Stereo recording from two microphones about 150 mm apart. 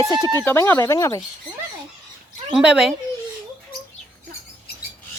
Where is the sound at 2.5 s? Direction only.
5° right (ahead or behind).